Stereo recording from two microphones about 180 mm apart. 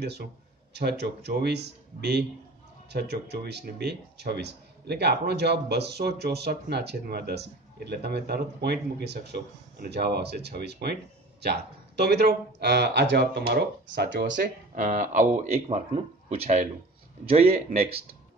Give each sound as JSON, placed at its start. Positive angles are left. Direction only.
{"t": 0.0, "sound": "speech", "side_deg": -65}
{"t": 12.0, "sound": "speech", "side_deg": -65}
{"t": 14.8, "sound": "a man's voice", "side_deg": -45}